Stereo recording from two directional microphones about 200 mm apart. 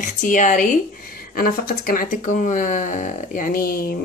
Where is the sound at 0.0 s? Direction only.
40° left (ahead or behind).